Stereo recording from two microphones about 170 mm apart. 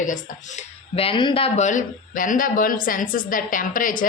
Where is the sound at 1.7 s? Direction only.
50° left (ahead or behind).